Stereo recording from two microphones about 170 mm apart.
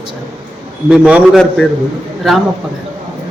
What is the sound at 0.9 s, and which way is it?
Speech, 5° right (ahead or behind).